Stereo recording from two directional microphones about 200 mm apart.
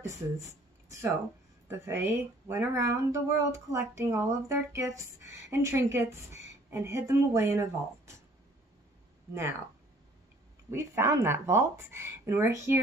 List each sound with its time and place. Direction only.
0.0 s speech: 15° right (ahead or behind)
1.7 s speech: 10° right (ahead or behind)
10.7 s speech: 15° right (ahead or behind)